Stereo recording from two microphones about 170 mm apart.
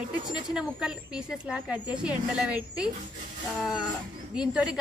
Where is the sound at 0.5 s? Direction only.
5° right (ahead or behind).